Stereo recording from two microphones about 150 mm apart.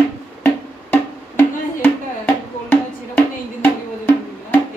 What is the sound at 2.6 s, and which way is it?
Music, 15° left (ahead or behind).